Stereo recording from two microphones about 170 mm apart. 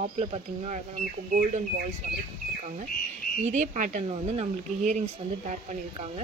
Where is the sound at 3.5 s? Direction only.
45° right (ahead or behind).